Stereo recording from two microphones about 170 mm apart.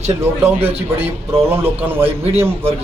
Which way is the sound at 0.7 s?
35° right (ahead or behind).